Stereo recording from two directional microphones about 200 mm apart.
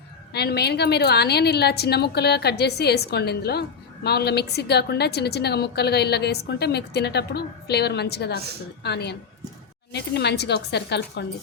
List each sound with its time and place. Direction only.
0.3 s a woman's voice: 55° left (ahead or behind)